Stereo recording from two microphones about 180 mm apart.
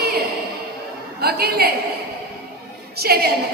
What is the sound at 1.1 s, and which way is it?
Speech, 60° right (ahead or behind).